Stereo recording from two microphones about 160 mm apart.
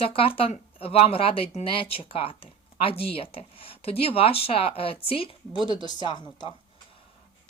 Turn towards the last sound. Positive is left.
turn(degrees=25)  # may be behind; listen again after turning